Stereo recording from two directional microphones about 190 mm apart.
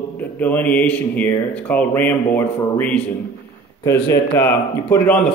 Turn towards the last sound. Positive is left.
turn(degrees=10)  # may be behind; listen again after turning